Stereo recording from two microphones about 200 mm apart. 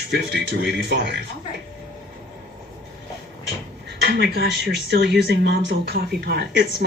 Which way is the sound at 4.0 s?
55° right (ahead or behind).